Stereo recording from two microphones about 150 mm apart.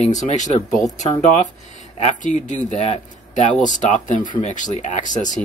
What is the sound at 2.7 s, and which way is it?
Speech, 50° left (ahead or behind).